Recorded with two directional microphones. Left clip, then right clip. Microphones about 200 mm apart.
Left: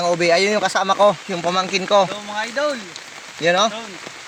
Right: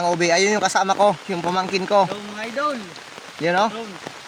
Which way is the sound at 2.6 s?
Centre (ahead or behind).